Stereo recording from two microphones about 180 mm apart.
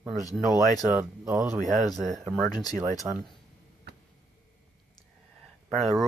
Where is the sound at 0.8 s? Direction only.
15° right (ahead or behind).